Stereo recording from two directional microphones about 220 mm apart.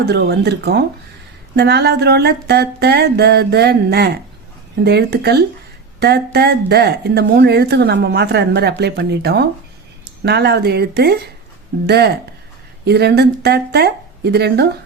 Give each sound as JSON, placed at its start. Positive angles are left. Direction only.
{"t": 0.0, "sound": "speech", "side_deg": -45}